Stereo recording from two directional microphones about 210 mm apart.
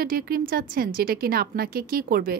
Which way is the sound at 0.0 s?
45° right (ahead or behind).